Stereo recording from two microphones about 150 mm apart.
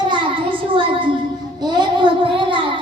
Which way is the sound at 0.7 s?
35° right (ahead or behind).